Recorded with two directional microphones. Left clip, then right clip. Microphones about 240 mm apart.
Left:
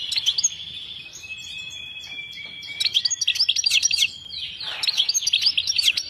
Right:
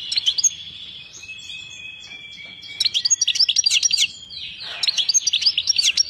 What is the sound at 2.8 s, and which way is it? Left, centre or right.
Chirp, centre.